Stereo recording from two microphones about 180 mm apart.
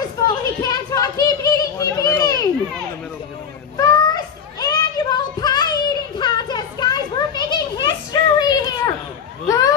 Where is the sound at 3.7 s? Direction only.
20° left (ahead or behind).